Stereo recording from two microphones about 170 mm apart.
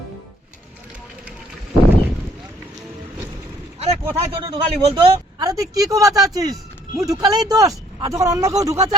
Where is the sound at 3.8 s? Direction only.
35° right (ahead or behind).